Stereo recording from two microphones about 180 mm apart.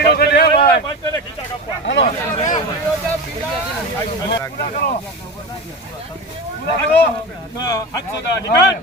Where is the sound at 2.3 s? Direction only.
45° left (ahead or behind).